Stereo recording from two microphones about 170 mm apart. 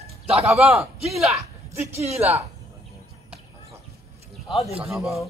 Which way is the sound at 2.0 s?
40° right (ahead or behind).